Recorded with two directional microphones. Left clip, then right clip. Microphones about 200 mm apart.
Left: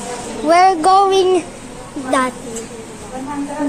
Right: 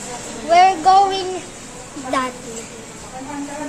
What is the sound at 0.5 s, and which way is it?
Child singing, 40° left (ahead or behind).